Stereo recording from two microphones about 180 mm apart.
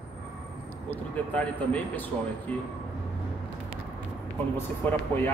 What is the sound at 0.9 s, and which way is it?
Speech, 5° left (ahead or behind).